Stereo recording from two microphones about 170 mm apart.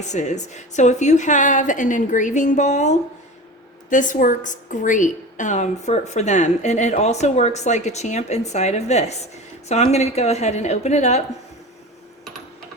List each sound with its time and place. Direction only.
0.0 s a woman's voice: 45° left (ahead or behind)